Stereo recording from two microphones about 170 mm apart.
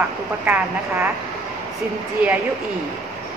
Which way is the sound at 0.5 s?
10° right (ahead or behind).